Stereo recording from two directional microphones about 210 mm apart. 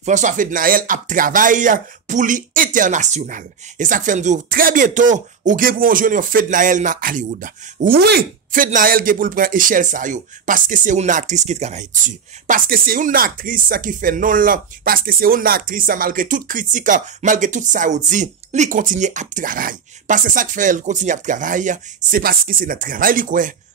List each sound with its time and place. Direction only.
0.0 s speech: 35° right (ahead or behind)